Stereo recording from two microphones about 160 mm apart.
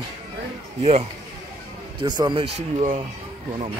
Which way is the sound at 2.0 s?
25° right (ahead or behind).